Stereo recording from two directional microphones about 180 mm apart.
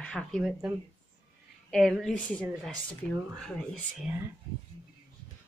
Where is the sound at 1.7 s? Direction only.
Centre (ahead or behind).